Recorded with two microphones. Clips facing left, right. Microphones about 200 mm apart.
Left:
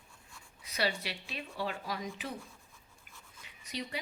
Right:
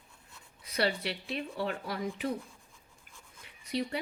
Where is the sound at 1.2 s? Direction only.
60° right (ahead or behind).